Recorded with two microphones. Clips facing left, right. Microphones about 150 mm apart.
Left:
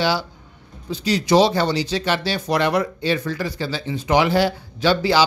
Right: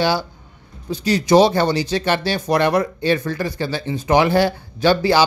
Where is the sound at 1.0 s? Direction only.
50° right (ahead or behind).